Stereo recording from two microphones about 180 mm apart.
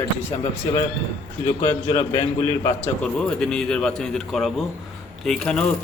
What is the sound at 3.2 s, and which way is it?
A man's voice, 5° left (ahead or behind).